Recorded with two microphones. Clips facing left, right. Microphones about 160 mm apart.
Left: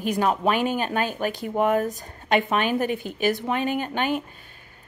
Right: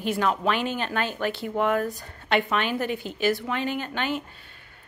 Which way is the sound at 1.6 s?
20° left (ahead or behind).